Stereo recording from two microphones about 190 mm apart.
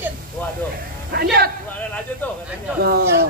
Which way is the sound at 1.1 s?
55° right (ahead or behind).